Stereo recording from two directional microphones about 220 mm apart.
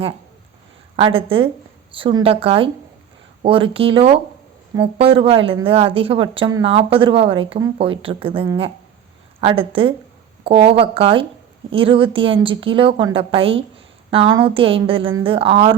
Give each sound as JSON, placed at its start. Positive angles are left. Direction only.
{"t": 0.9, "sound": "speech", "side_deg": -25}